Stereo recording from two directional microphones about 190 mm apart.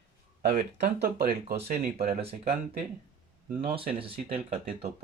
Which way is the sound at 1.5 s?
35° right (ahead or behind).